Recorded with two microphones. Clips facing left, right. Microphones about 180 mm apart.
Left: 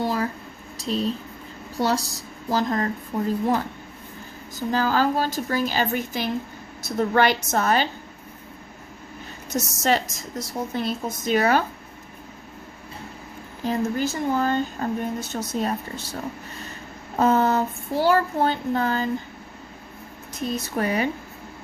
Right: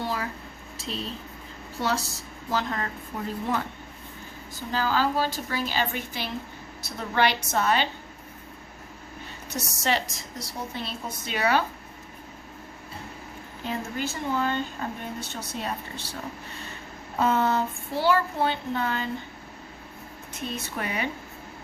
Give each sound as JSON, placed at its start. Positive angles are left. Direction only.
{"t": 0.0, "sound": "a sound", "side_deg": 40}
{"t": 0.8, "sound": "speech", "side_deg": 40}
{"t": 1.8, "sound": "child singing", "side_deg": 35}
{"t": 3.1, "sound": "speech", "side_deg": 55}
{"t": 4.7, "sound": "speech", "side_deg": 45}
{"t": 9.5, "sound": "speech", "side_deg": 45}
{"t": 13.7, "sound": "speech", "side_deg": 40}
{"t": 17.2, "sound": "child singing", "side_deg": 40}
{"t": 20.3, "sound": "child singing", "side_deg": 40}